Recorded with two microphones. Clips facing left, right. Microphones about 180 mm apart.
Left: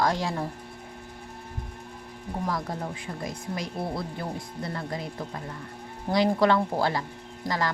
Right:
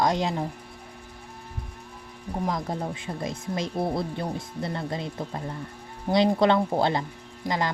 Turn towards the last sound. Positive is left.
turn(degrees=-20)  # may be behind; listen again after turning